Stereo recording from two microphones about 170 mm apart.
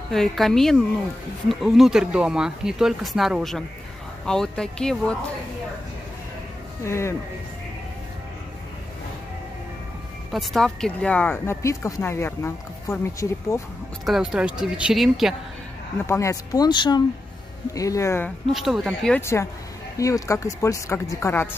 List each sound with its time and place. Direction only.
0.1 s speech: centre (ahead or behind)
6.8 s speech: 15° left (ahead or behind)
10.3 s speech: centre (ahead or behind)
14.0 s speech: centre (ahead or behind)
16.1 s speech: 20° left (ahead or behind)
18.5 s speech: centre (ahead or behind)
20.0 s speech: 20° left (ahead or behind)